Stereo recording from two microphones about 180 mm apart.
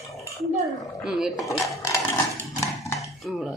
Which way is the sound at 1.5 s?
20° left (ahead or behind).